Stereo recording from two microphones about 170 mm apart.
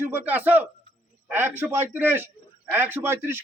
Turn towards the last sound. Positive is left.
turn(degrees=-15)  # may be behind; listen again after turning